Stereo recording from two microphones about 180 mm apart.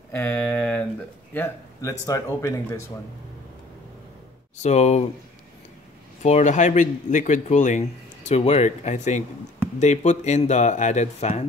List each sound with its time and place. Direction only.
0.1 s a sound: 10° left (ahead or behind)
1.3 s speech: 15° left (ahead or behind)
4.6 s speech: 40° left (ahead or behind)
6.2 s speech: 40° left (ahead or behind)